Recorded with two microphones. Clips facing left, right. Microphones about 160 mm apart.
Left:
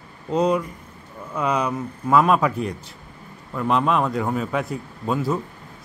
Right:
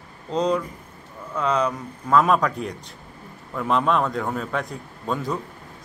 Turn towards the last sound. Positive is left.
turn(degrees=5)  # may be behind; listen again after turning